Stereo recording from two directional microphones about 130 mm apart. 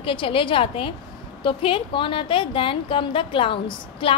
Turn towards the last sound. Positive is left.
turn(degrees=40)  # may be behind; listen again after turning